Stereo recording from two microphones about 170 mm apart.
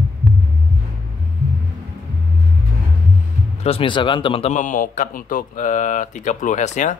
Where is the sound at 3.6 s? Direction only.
30° left (ahead or behind).